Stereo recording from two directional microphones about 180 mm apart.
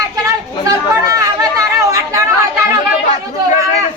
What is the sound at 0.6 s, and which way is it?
Chatter, 15° right (ahead or behind).